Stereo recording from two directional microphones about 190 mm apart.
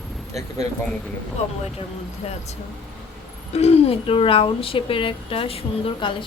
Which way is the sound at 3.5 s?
35° left (ahead or behind).